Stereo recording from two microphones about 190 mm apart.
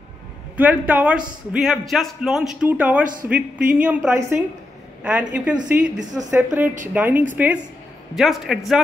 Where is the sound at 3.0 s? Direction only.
45° right (ahead or behind).